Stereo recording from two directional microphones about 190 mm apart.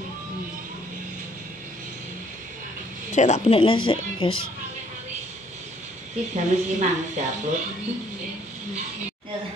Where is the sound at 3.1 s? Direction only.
40° left (ahead or behind).